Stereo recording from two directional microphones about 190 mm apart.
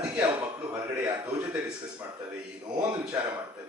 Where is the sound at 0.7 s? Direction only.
10° right (ahead or behind).